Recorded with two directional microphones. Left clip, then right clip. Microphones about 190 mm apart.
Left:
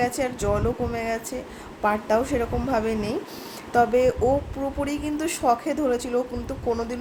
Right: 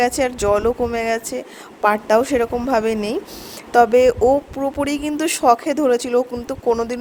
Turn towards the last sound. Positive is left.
turn(degrees=-40)  # may be behind; listen again after turning